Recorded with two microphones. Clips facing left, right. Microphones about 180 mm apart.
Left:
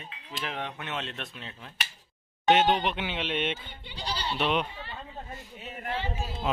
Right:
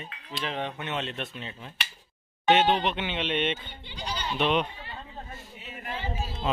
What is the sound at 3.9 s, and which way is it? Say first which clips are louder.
Speech: even; 35° left (ahead or behind).